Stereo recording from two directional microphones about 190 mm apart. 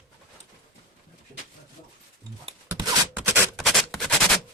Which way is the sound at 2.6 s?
20° right (ahead or behind).